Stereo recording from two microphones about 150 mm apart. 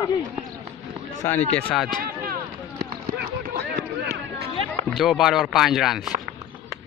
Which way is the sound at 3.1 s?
90° right.